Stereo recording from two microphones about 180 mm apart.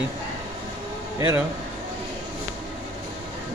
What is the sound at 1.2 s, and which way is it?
Speech, 20° right (ahead or behind).